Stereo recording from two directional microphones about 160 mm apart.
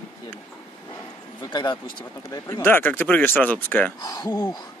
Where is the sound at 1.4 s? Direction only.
30° left (ahead or behind); by 3.9 s 10° left (ahead or behind).